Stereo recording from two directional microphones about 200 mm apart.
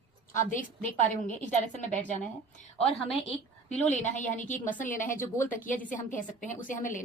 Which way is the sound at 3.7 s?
35° left (ahead or behind).